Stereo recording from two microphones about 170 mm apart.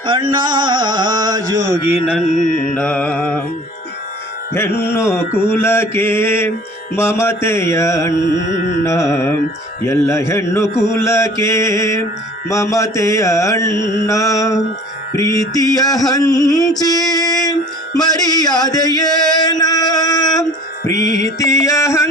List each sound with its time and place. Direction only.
0.0 s a sound: 30° right (ahead or behind)
2.2 s music: 45° left (ahead or behind)
2.7 s mantra: 5° left (ahead or behind)
4.5 s mantra: 15° left (ahead or behind)
8.4 s music: 50° left (ahead or behind)
8.8 s mantra: 15° left (ahead or behind)
12.5 s music: 20° left (ahead or behind)
15.3 s mantra: 20° left (ahead or behind)